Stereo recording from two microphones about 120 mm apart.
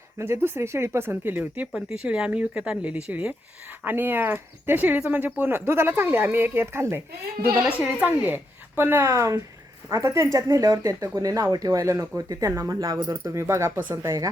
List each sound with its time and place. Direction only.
0.2 s speech: 20° right (ahead or behind)
7.5 s a woman's voice: 5° right (ahead or behind); by 14.3 s 25° right (ahead or behind)